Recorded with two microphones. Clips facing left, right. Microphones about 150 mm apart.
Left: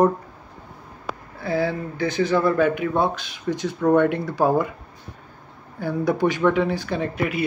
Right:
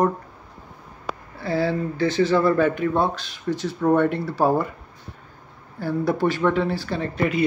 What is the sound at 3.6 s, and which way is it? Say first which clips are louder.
Speech: left 1 dB; 5° right (ahead or behind).